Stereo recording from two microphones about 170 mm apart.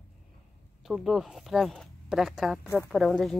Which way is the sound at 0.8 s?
Centre (ahead or behind).